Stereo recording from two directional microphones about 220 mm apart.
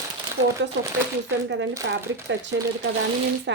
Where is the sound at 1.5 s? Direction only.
55° right (ahead or behind).